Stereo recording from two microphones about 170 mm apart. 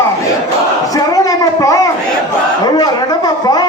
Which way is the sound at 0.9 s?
20° left (ahead or behind).